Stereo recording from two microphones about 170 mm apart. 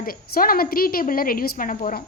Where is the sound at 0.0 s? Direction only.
60° left (ahead or behind).